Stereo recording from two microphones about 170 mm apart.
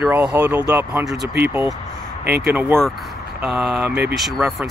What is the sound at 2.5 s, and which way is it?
Speech, 10° right (ahead or behind).